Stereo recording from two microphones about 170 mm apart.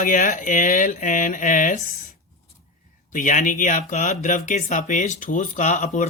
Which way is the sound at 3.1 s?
50° left (ahead or behind).